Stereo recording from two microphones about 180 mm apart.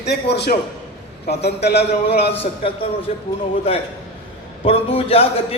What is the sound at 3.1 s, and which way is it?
A man's voice, 35° left (ahead or behind).